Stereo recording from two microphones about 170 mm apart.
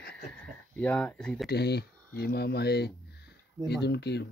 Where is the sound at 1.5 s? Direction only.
70° left (ahead or behind).